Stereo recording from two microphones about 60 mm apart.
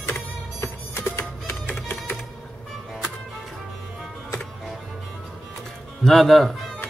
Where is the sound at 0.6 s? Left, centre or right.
Left.